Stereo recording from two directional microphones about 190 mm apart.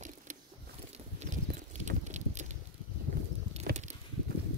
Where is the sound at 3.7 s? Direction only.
55° right (ahead or behind).